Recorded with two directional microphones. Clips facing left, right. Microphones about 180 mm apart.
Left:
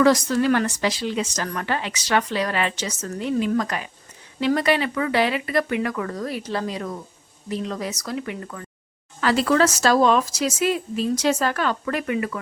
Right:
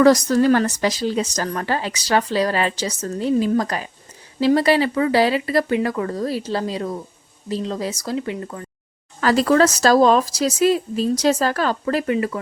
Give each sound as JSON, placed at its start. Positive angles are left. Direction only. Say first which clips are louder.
{"t": 0.0, "sound": "speech", "louder": "right 4 dB", "side_deg": -40}
{"t": 9.2, "sound": "speech", "louder": "right 3 dB", "side_deg": -40}